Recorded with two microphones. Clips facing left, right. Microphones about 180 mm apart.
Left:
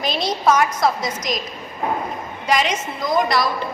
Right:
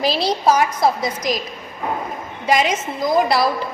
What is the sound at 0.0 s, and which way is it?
Speech, 30° right (ahead or behind).